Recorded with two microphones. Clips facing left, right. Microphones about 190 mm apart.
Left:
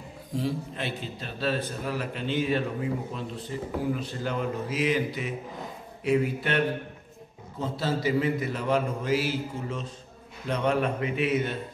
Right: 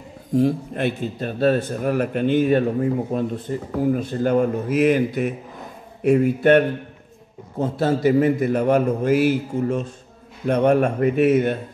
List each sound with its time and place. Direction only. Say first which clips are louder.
0.4 s a man's voice: right 10 dB; 50° right (ahead or behind)